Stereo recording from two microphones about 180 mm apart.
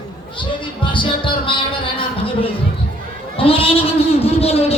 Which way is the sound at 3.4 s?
30° left (ahead or behind).